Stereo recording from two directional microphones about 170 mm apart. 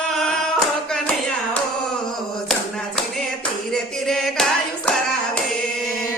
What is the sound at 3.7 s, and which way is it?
Music, 5° left (ahead or behind).